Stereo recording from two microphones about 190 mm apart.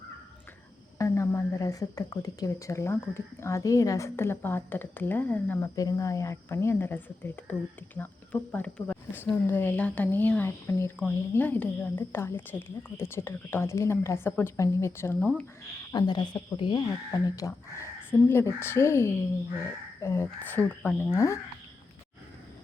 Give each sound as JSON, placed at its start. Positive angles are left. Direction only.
{"t": 0.9, "sound": "speech", "side_deg": 15}
{"t": 15.9, "sound": "speech", "side_deg": 20}